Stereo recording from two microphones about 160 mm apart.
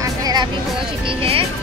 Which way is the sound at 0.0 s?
25° right (ahead or behind).